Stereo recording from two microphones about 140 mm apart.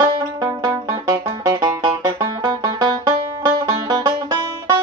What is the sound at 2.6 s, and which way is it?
Music, 30° right (ahead or behind).